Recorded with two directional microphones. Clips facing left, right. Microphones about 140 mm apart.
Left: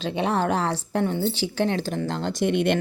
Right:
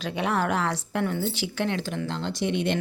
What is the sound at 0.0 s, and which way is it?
A woman's voice, 30° left (ahead or behind).